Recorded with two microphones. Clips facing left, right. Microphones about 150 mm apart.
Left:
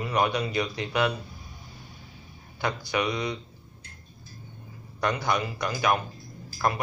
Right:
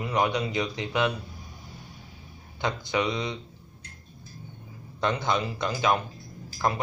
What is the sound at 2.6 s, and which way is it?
Speech, 20° right (ahead or behind).